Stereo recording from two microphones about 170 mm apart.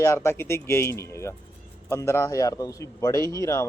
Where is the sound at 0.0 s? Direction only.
15° left (ahead or behind).